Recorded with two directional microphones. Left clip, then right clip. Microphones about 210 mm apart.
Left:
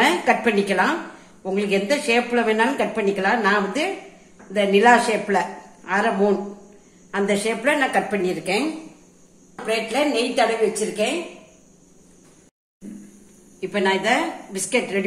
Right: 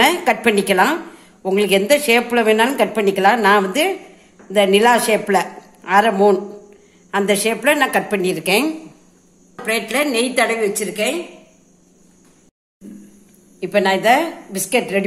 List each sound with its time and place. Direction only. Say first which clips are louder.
0.0 s a sound: right 3 dB; 50° right (ahead or behind)
1.4 s a woman's voice: right 6 dB; 50° right (ahead or behind)
9.7 s a woman's voice: right 3 dB; 50° right (ahead or behind)
13.6 s a woman's voice: right 5 dB; 45° right (ahead or behind)